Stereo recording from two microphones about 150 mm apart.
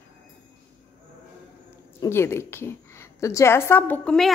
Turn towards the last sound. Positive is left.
turn(degrees=5)  # may be behind; listen again after turning